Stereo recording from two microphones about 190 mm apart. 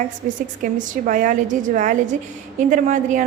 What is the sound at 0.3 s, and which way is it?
A woman's voice, 45° right (ahead or behind).